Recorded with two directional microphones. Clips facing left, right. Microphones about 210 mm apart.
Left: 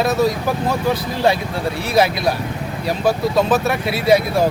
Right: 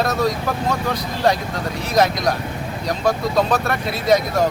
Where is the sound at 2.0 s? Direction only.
5° left (ahead or behind).